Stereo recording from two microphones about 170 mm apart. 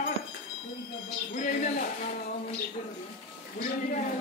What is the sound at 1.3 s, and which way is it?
Speech, 45° left (ahead or behind).